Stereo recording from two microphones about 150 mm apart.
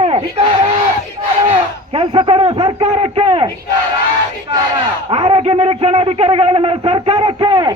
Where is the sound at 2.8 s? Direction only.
45° right (ahead or behind).